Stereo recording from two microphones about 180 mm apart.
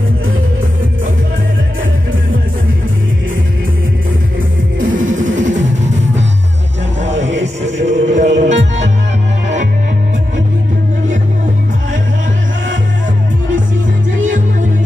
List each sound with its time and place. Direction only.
5.2 s music: 45° right (ahead or behind)
7.0 s music: 40° right (ahead or behind)
14.2 s music: 45° right (ahead or behind)